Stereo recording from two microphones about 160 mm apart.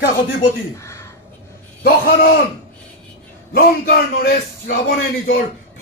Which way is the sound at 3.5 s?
70° left (ahead or behind).